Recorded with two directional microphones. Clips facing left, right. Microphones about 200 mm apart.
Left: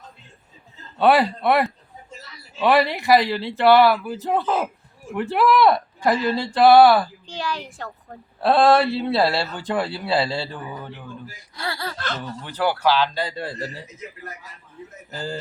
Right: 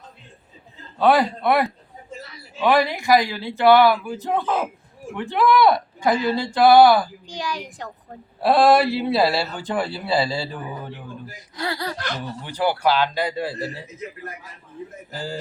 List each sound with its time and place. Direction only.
0.9 s speech: 5° left (ahead or behind)
7.3 s speech: 15° right (ahead or behind)
8.4 s speech: centre (ahead or behind)
11.3 s speech: 20° right (ahead or behind)
15.1 s speech: 5° right (ahead or behind)